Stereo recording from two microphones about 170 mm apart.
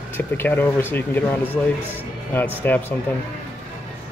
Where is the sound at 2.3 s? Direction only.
10° left (ahead or behind).